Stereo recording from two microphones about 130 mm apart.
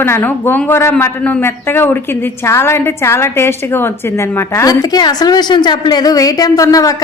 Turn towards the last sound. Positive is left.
turn(degrees=25)  # may be behind; listen again after turning